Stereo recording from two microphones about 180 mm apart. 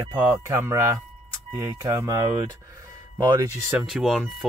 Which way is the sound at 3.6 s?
5° right (ahead or behind).